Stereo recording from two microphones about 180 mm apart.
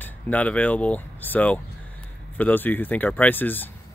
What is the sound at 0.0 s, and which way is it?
Speech, 10° left (ahead or behind).